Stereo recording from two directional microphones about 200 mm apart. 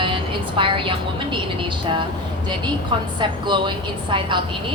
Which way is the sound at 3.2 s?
25° right (ahead or behind).